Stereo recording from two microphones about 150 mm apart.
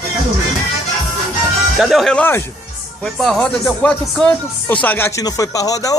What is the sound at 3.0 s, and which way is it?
Speech, centre (ahead or behind).